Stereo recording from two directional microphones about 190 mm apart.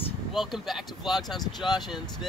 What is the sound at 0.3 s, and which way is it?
Speech, centre (ahead or behind).